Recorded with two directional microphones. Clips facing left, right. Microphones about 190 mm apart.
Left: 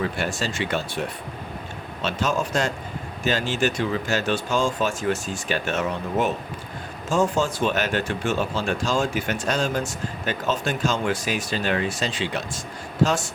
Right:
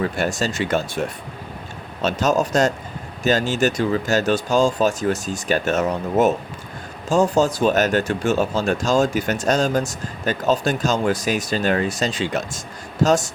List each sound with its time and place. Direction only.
0.2 s speech: 45° right (ahead or behind)